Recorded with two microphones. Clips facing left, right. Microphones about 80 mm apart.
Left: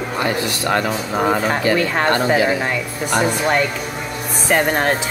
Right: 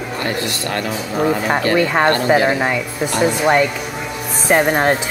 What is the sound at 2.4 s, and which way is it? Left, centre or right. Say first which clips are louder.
Speech: right 1 dB; right.